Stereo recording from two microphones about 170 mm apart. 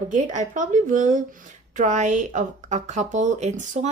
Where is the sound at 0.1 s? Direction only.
50° right (ahead or behind).